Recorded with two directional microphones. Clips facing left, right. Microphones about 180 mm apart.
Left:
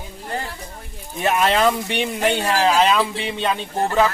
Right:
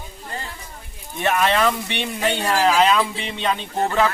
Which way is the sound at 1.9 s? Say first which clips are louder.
Left 3 dB; 10° left (ahead or behind).